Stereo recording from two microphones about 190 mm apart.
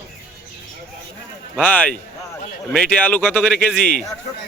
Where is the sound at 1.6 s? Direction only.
10° left (ahead or behind).